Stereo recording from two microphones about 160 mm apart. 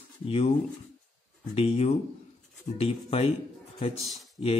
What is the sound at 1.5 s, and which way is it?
Speech, 40° left (ahead or behind).